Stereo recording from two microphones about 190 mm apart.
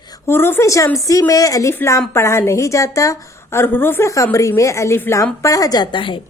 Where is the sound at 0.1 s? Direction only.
10° left (ahead or behind).